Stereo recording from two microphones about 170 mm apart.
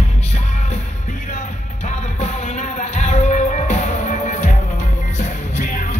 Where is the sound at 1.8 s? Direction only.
40° left (ahead or behind).